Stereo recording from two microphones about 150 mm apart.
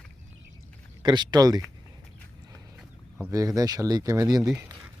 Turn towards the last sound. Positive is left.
turn(degrees=-25)  # may be behind; listen again after turning